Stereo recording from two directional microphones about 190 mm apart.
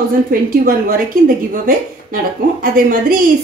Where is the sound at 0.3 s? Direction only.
50° right (ahead or behind).